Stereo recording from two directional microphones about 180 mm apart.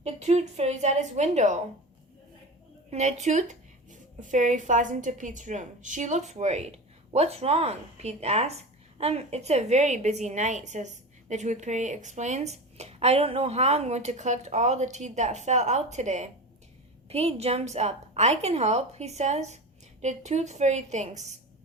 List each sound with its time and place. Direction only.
0.0 s a woman's voice: 35° right (ahead or behind)
3.2 s a woman's voice: 40° right (ahead or behind)